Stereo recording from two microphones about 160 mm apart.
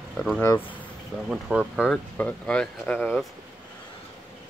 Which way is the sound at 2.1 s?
5° left (ahead or behind).